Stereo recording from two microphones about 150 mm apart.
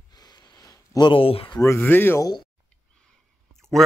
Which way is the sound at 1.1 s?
40° left (ahead or behind).